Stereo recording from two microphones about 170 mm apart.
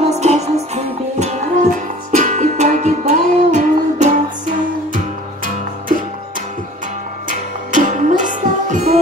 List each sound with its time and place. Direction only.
0.0 s music: 40° right (ahead or behind)
7.2 s music: 50° right (ahead or behind)